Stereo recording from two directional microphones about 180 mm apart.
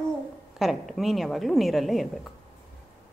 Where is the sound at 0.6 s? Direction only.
Centre (ahead or behind).